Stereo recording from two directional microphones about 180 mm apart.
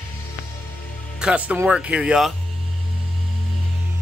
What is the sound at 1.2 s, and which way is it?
Speech, 5° right (ahead or behind).